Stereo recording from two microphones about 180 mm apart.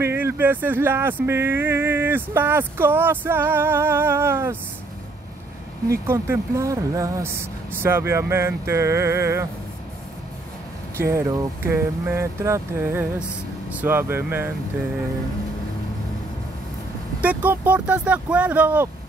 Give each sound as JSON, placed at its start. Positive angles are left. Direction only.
{"t": 0.0, "sound": "speech", "side_deg": -10}
{"t": 6.0, "sound": "speech", "side_deg": -15}
{"t": 11.0, "sound": "speech", "side_deg": -15}
{"t": 17.2, "sound": "speech", "side_deg": -10}